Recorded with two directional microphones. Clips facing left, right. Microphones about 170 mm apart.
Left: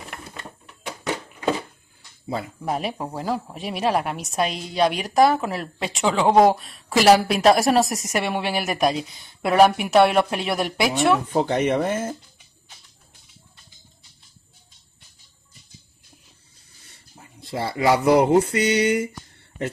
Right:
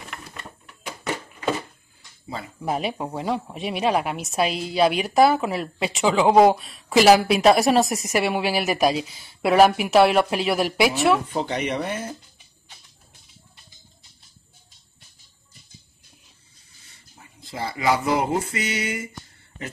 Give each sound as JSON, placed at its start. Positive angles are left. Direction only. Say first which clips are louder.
{"t": 2.6, "sound": "speech", "louder": "right 4 dB", "side_deg": 0}
{"t": 11.4, "sound": "speech", "louder": "left 5 dB", "side_deg": 50}
{"t": 17.4, "sound": "speech", "louder": "left 3 dB", "side_deg": 30}
{"t": 17.7, "sound": "speech", "louder": "left 5 dB", "side_deg": 65}